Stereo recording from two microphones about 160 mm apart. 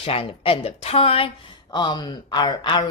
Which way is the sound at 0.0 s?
35° left (ahead or behind).